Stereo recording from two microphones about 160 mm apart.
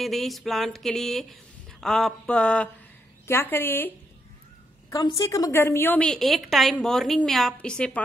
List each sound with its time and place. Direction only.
0.0 s a woman's voice: centre (ahead or behind)
4.8 s a sound: 20° left (ahead or behind)
5.2 s a woman's voice: 20° left (ahead or behind)